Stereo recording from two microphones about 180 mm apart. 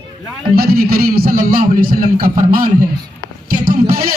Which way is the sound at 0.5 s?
55° right (ahead or behind).